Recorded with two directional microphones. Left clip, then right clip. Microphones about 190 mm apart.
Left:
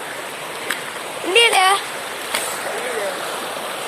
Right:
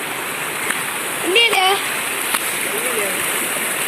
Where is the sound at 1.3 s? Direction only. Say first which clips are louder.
Left 1 dB; 25° left (ahead or behind).